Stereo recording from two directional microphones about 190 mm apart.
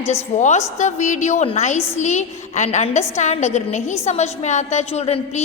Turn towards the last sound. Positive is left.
turn(degrees=35)  # may be behind; listen again after turning